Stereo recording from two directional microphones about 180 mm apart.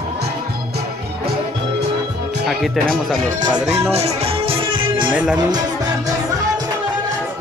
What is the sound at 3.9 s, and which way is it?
Music, 35° right (ahead or behind).